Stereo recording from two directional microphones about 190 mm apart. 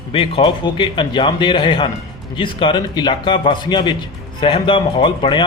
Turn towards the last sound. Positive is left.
turn(degrees=25)  # may be behind; listen again after turning